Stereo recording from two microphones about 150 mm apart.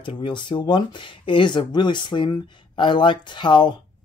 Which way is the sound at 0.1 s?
35° left (ahead or behind).